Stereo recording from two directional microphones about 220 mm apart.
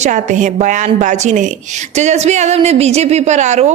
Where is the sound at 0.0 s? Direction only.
35° right (ahead or behind).